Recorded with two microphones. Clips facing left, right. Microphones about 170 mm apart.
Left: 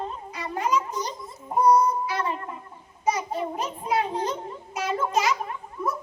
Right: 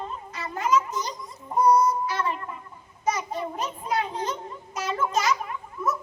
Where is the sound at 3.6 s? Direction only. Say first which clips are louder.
Left 1 dB; 10° left (ahead or behind).